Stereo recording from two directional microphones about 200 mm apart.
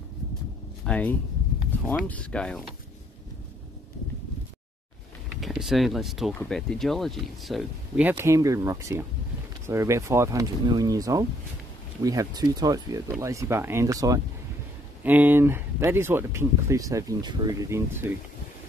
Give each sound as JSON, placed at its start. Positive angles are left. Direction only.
{"t": 0.8, "sound": "speech", "side_deg": 5}
{"t": 5.4, "sound": "speech", "side_deg": 0}